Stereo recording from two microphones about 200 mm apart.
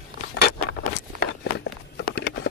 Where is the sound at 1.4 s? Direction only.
60° left (ahead or behind).